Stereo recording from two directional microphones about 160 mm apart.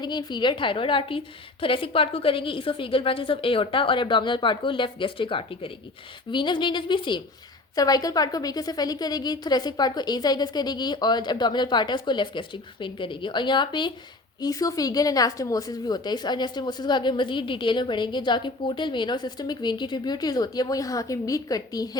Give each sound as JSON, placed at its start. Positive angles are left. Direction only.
{"t": 0.0, "sound": "a woman's voice", "side_deg": 25}